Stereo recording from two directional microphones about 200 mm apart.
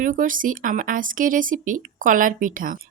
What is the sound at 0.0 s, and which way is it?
Speech, 40° right (ahead or behind).